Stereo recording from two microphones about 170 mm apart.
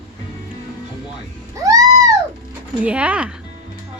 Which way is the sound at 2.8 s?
5° right (ahead or behind).